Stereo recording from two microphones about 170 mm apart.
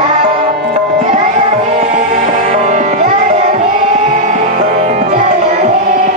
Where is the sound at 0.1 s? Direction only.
40° right (ahead or behind).